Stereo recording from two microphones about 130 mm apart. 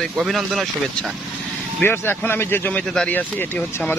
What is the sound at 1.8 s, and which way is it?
Speech, 15° left (ahead or behind).